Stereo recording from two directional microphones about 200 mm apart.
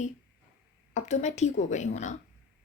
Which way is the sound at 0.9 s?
35° left (ahead or behind).